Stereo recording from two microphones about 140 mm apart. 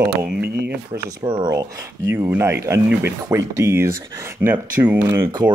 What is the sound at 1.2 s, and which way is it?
Speech, 35° right (ahead or behind).